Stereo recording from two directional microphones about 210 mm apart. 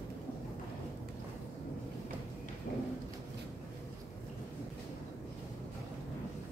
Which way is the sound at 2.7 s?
40° left (ahead or behind).